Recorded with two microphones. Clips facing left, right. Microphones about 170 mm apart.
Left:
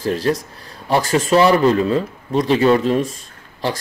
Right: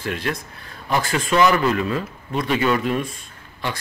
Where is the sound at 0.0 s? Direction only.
35° left (ahead or behind).